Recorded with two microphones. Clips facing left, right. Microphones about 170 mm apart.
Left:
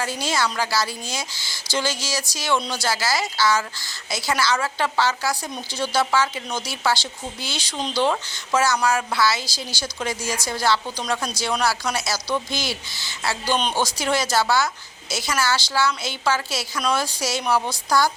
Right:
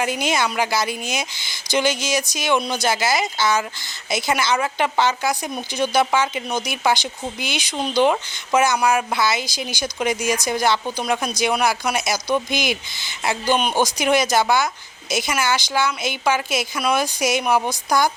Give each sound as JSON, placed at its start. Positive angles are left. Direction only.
{"t": 0.0, "sound": "a woman's voice", "side_deg": -20}